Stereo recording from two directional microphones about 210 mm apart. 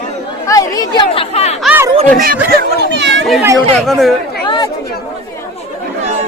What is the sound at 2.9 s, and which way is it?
Speech, 55° right (ahead or behind).